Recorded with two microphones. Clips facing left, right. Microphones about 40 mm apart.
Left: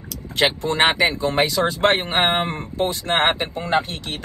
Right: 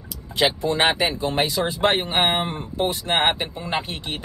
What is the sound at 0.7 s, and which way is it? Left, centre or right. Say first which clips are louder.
Speech: left 3 dB; left.